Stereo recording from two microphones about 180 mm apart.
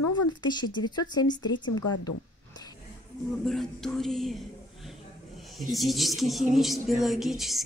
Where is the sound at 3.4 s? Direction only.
Centre (ahead or behind).